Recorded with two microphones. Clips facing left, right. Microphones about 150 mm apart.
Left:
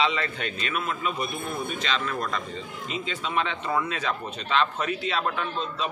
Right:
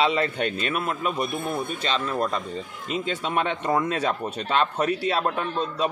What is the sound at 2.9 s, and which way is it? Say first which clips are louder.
Speech: right 5 dB; 50° right (ahead or behind).